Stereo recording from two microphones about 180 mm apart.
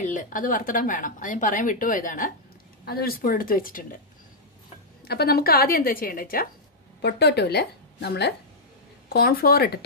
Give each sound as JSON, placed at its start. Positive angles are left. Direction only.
{"t": 0.0, "sound": "a woman's voice", "side_deg": 45}
{"t": 5.0, "sound": "a woman's voice", "side_deg": 60}
{"t": 7.0, "sound": "a woman's voice", "side_deg": 65}
{"t": 9.1, "sound": "a woman's voice", "side_deg": 55}